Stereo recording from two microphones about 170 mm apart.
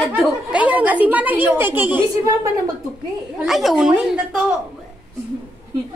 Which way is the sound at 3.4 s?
Centre (ahead or behind).